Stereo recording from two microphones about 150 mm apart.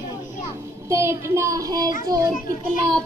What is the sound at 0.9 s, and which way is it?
A child's voice, 20° right (ahead or behind).